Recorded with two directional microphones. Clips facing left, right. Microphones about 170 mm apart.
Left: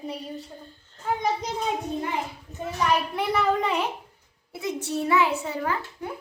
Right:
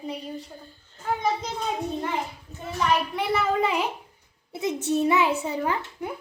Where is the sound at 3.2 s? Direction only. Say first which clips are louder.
Even; 5° right (ahead or behind).